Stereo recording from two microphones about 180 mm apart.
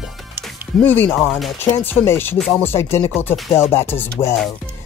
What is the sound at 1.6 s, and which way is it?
Speech, 10° left (ahead or behind).